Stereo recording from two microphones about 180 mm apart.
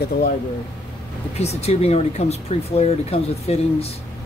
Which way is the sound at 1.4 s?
35° left (ahead or behind).